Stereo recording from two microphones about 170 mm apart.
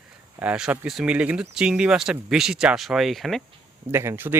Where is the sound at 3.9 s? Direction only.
15° right (ahead or behind).